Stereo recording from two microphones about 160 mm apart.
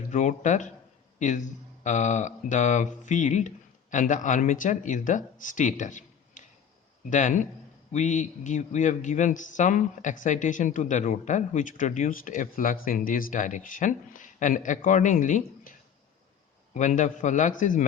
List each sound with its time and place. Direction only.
0.1 s speech: 50° left (ahead or behind)
16.7 s speech: 50° left (ahead or behind)